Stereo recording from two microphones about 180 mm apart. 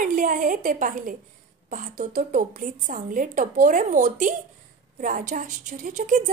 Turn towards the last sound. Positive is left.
turn(degrees=-40)  # may be behind; listen again after turning